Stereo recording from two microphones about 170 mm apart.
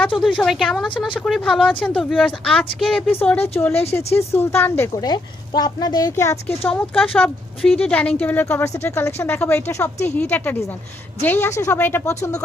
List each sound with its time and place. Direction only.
0.2 s speech: centre (ahead or behind)
4.9 s speech: 25° left (ahead or behind)